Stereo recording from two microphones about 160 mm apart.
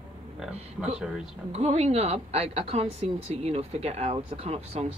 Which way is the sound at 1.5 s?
40° right (ahead or behind).